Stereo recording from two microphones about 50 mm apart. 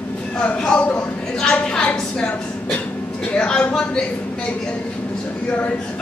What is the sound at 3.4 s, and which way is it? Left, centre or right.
Speech, centre.